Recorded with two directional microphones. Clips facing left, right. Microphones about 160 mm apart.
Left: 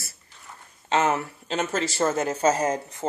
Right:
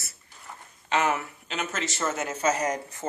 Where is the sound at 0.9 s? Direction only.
30° left (ahead or behind).